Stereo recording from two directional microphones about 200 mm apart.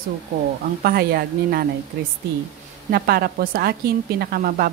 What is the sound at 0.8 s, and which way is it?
Speech, 50° right (ahead or behind).